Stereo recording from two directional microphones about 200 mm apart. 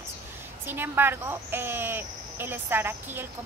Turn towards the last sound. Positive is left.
turn(degrees=-10)  # may be behind; listen again after turning